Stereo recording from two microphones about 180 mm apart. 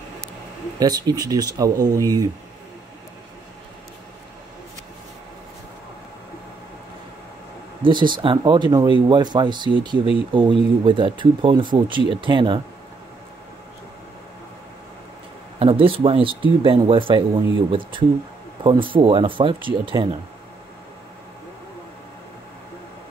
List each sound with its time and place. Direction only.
0.7 s speech: 20° right (ahead or behind)
7.8 s speech: 25° right (ahead or behind)
15.6 s speech: 30° right (ahead or behind)